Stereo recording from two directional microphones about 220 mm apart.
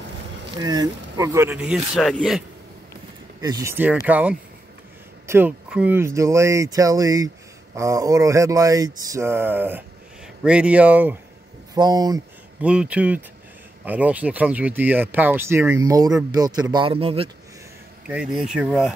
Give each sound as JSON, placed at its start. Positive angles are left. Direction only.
{"t": 0.5, "sound": "speech", "side_deg": -20}
{"t": 3.3, "sound": "speech", "side_deg": -15}
{"t": 11.7, "sound": "speech", "side_deg": -20}
{"t": 12.6, "sound": "speech", "side_deg": -5}
{"t": 18.0, "sound": "speech", "side_deg": -5}